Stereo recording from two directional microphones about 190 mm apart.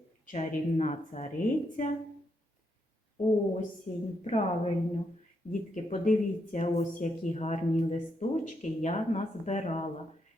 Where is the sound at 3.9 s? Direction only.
40° left (ahead or behind).